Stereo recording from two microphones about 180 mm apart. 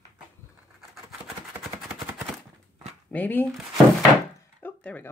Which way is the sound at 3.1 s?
10° left (ahead or behind).